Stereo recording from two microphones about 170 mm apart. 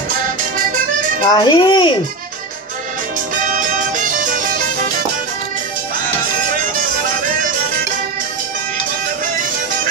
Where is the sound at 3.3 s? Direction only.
50° right (ahead or behind).